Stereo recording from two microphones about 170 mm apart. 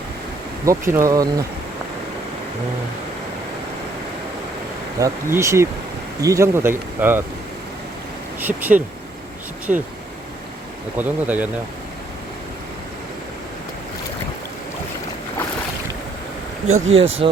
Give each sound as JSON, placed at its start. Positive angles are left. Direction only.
{"t": 0.6, "sound": "speech", "side_deg": -15}
{"t": 4.9, "sound": "speech", "side_deg": -20}
{"t": 8.4, "sound": "speech", "side_deg": -10}
{"t": 10.9, "sound": "speech", "side_deg": -10}
{"t": 16.6, "sound": "speech", "side_deg": -40}